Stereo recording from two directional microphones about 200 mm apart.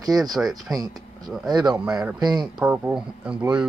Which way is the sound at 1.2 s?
Centre (ahead or behind).